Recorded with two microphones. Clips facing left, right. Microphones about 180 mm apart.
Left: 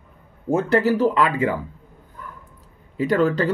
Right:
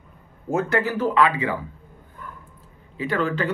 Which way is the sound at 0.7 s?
40° left (ahead or behind).